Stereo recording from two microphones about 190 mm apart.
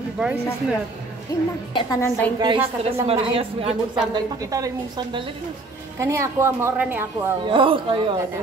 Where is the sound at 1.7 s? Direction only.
20° left (ahead or behind).